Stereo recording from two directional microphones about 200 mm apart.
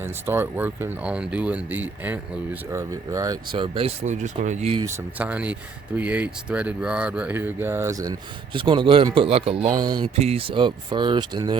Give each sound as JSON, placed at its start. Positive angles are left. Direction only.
{"t": 0.0, "sound": "speech", "side_deg": -10}
{"t": 4.8, "sound": "speech", "side_deg": -10}